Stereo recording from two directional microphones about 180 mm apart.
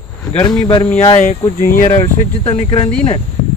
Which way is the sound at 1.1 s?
35° left (ahead or behind).